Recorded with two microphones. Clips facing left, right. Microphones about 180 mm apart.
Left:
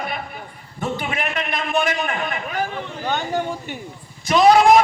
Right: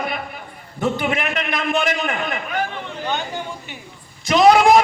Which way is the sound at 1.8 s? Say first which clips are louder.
Right 1 dB; 45° right (ahead or behind).